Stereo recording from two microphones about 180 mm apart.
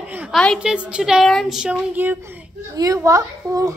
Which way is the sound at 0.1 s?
10° right (ahead or behind).